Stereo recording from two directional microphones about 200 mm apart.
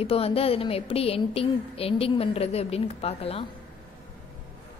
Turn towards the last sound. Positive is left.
turn(degrees=30)  # may be behind; listen again after turning